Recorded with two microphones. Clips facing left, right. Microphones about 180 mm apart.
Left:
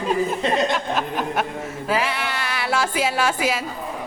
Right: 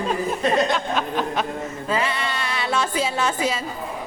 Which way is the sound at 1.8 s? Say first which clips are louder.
Left 1 dB; 85° left.